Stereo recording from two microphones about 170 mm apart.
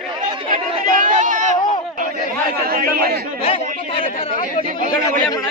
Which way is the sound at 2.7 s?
60° right (ahead or behind).